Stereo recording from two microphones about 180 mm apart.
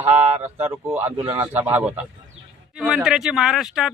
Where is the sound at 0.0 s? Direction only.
35° right (ahead or behind).